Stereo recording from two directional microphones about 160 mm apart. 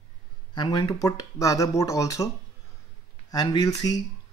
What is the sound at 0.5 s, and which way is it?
Speech, 30° left (ahead or behind).